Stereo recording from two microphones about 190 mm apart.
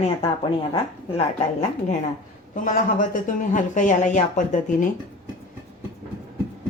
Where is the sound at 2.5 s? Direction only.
45° left (ahead or behind).